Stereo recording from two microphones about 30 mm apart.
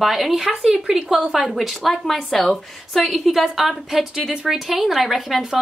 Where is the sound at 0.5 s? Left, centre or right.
Centre.